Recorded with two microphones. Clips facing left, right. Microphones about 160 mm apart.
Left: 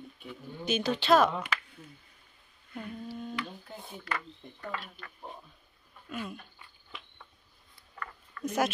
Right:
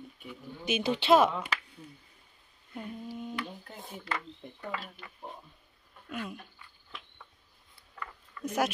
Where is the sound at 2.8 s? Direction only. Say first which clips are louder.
Even; 15° right (ahead or behind).